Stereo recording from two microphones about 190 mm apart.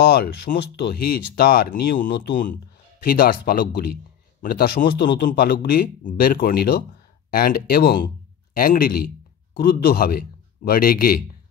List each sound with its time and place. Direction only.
0.1 s speech: 55° left (ahead or behind)
2.0 s speech: 65° left (ahead or behind)
2.3 s speech: 45° left (ahead or behind)